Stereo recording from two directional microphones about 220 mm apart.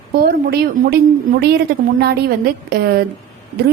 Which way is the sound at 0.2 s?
45° right (ahead or behind).